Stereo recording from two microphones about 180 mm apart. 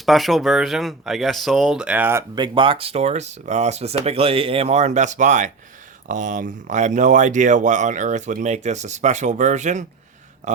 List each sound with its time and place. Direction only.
0.0 s speech: centre (ahead or behind)
2.3 s speech: 25° right (ahead or behind); by 10.6 s 40° right (ahead or behind)